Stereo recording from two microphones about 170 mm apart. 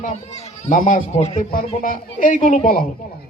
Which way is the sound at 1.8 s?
50° left (ahead or behind).